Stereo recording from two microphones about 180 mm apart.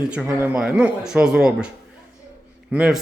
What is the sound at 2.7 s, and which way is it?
Speech, 5° right (ahead or behind).